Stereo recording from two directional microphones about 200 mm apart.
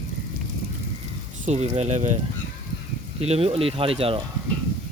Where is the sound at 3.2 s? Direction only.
30° right (ahead or behind).